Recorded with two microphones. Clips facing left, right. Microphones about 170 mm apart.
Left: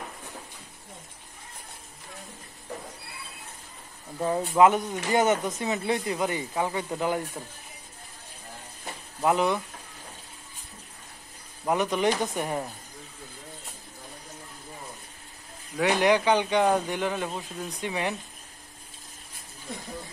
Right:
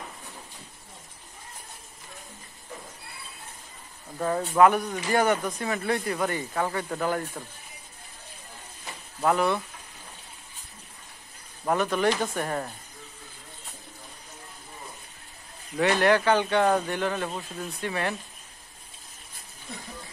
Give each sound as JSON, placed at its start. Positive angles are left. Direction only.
{"t": 4.2, "sound": "speech", "side_deg": 15}
{"t": 9.2, "sound": "speech", "side_deg": 15}
{"t": 11.6, "sound": "speech", "side_deg": 15}
{"t": 15.8, "sound": "speech", "side_deg": 15}